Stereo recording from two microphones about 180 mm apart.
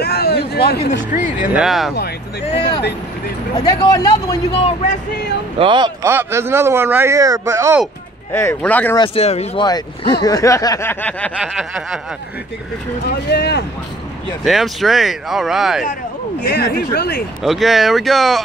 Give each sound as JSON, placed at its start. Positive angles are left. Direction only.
{"t": 0.0, "sound": "speech", "side_deg": 60}
{"t": 1.5, "sound": "speech", "side_deg": 0}
{"t": 2.5, "sound": "speech", "side_deg": 25}
{"t": 4.5, "sound": "speech", "side_deg": 35}
{"t": 5.6, "sound": "speech", "side_deg": -25}
{"t": 6.0, "sound": "speech", "side_deg": -15}
{"t": 8.3, "sound": "a sound", "side_deg": 15}
{"t": 8.9, "sound": "speech", "side_deg": 30}
{"t": 10.2, "sound": "a sound", "side_deg": 20}
{"t": 11.3, "sound": "speech", "side_deg": 0}
{"t": 13.3, "sound": "speech", "side_deg": 70}
{"t": 14.4, "sound": "speech", "side_deg": 0}
{"t": 16.4, "sound": "speech", "side_deg": 65}
{"t": 17.4, "sound": "speech", "side_deg": 0}